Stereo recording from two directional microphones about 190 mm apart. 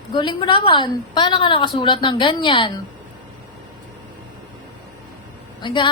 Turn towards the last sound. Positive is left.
turn(degrees=25)  # may be behind; listen again after turning